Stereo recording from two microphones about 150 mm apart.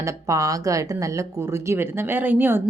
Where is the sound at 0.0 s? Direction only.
20° right (ahead or behind).